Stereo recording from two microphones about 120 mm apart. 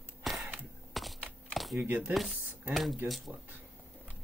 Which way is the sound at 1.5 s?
Centre (ahead or behind).